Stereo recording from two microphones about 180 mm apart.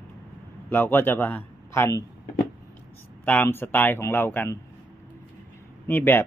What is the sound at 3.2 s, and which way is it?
Speech, 10° left (ahead or behind).